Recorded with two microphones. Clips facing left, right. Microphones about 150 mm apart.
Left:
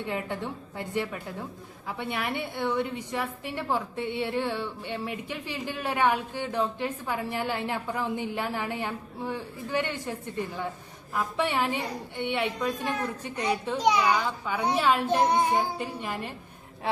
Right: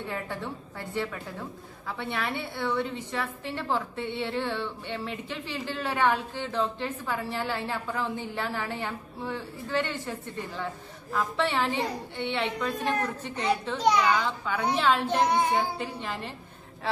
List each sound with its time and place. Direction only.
0.1 s a woman's voice: 15° left (ahead or behind)
11.2 s a woman's voice: 15° left (ahead or behind)